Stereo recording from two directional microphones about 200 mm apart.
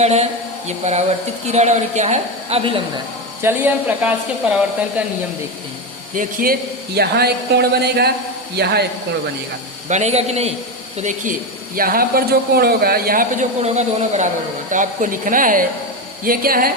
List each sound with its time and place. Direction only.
0.0 s a woman's voice: 30° right (ahead or behind)
1.5 s a woman's voice: 35° right (ahead or behind)
3.4 s speech: 10° right (ahead or behind)
6.1 s speech: 45° right (ahead or behind)
9.9 s a woman's voice: 35° right (ahead or behind)